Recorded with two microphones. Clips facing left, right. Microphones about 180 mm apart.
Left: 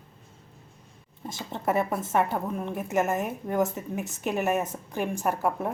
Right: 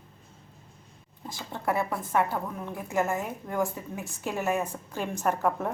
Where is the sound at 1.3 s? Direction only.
25° left (ahead or behind).